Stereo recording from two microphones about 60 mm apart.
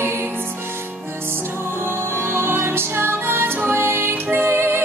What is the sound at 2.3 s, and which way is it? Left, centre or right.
Music, right.